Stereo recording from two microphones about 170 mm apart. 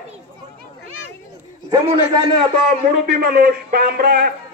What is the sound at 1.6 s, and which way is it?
Speech, 25° right (ahead or behind).